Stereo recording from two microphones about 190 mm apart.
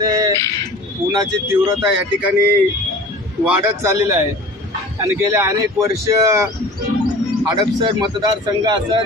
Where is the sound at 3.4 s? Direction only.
15° right (ahead or behind).